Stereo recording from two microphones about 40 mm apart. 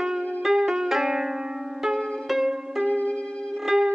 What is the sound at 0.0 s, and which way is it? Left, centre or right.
Music, centre.